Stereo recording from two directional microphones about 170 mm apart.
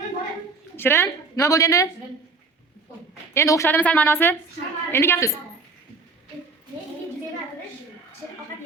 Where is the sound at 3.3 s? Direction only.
15° left (ahead or behind).